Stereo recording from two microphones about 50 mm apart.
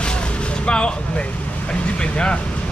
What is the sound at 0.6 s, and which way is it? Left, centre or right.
Speech, centre.